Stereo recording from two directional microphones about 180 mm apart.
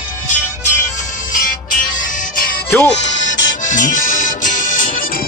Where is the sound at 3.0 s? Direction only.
85° left.